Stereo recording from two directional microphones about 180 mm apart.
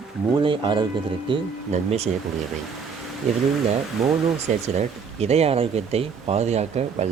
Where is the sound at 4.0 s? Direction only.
Centre (ahead or behind).